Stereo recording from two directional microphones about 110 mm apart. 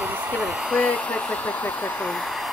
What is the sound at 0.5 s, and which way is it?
Speech, 5° right (ahead or behind).